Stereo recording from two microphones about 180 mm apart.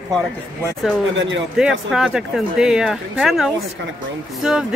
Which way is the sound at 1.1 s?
90° right.